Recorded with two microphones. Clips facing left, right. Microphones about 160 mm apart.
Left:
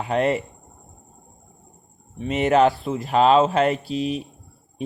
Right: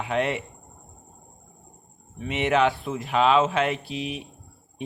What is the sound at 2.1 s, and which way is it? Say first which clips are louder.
Speech: left 5 dB; 40° left (ahead or behind).